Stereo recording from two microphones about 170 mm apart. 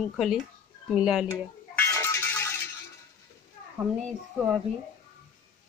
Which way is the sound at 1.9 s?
15° left (ahead or behind).